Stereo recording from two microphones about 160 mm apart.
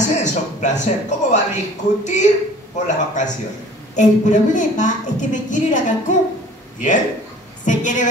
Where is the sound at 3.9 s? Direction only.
50° left (ahead or behind).